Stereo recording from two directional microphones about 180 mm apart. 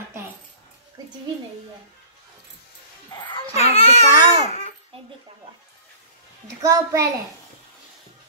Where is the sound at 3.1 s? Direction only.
25° left (ahead or behind).